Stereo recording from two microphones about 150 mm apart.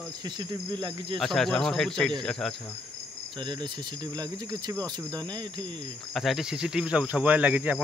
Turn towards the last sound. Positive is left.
turn(degrees=-10)  # may be behind; listen again after turning